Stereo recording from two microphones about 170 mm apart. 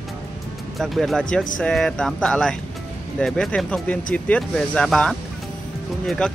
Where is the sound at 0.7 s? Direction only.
Centre (ahead or behind).